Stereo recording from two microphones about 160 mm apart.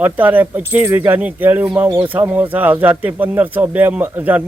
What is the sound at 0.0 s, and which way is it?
Speech, 10° right (ahead or behind).